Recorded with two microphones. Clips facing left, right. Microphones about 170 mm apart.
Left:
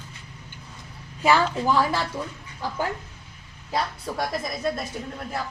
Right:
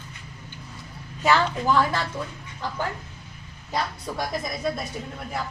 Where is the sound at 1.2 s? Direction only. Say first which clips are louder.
Left 1 dB; 10° left (ahead or behind).